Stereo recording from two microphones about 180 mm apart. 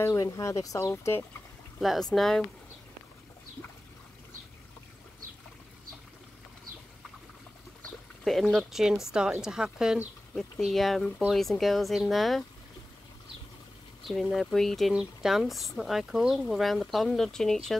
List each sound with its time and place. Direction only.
0.0 s speech: 15° left (ahead or behind)
1.8 s speech: centre (ahead or behind)
8.2 s speech: centre (ahead or behind)
14.0 s speech: centre (ahead or behind)